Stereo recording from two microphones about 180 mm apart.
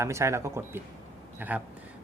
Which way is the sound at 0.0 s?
15° right (ahead or behind).